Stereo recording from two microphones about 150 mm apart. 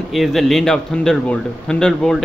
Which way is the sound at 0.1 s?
Centre (ahead or behind).